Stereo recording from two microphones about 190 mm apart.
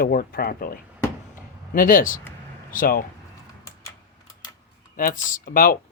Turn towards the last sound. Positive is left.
turn(degrees=45)  # may be behind; listen again after turning